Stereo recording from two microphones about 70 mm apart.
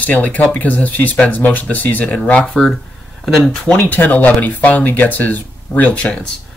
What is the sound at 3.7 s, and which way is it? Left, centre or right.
Speech, left.